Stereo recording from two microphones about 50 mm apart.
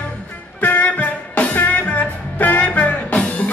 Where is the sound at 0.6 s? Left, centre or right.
Left.